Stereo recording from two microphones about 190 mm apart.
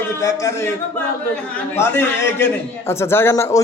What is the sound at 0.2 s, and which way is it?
Speech, 15° left (ahead or behind).